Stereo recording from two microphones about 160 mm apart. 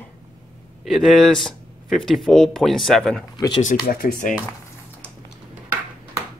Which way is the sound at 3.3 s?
25° left (ahead or behind).